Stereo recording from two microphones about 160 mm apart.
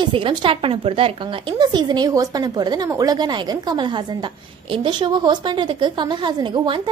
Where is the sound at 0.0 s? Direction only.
30° right (ahead or behind).